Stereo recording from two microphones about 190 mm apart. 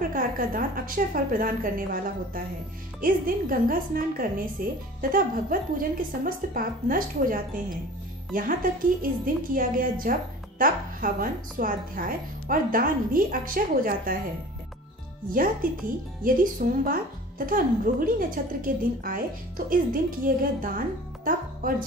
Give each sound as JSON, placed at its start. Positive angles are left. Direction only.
{"t": 0.1, "sound": "speech", "side_deg": -50}
{"t": 16.3, "sound": "speech", "side_deg": -45}